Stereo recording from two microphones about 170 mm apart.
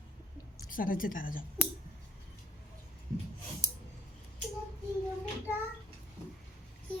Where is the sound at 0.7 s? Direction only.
55° left (ahead or behind).